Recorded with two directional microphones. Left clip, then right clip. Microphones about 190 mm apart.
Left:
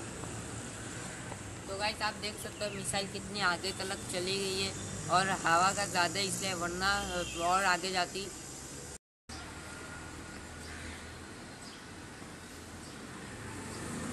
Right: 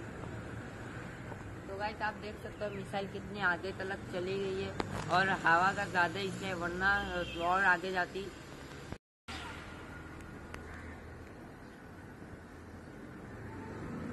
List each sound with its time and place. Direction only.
1.8 s speech: 20° left (ahead or behind)